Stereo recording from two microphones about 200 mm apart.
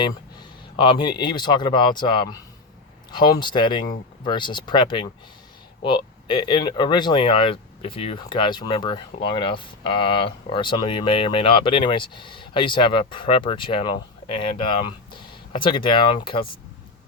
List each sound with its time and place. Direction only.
0.0 s speech: 25° left (ahead or behind)
3.4 s speech: 25° left (ahead or behind)